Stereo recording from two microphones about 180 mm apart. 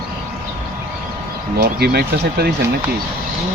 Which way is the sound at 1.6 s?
60° right (ahead or behind).